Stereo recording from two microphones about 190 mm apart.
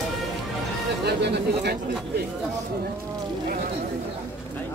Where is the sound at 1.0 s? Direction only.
60° right (ahead or behind).